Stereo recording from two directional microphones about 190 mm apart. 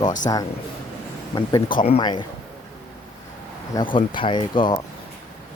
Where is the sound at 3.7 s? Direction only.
25° left (ahead or behind).